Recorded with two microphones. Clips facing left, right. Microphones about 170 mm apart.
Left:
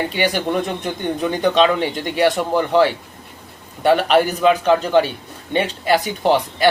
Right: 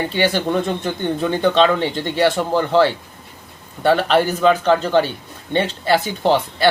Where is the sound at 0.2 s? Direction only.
15° left (ahead or behind).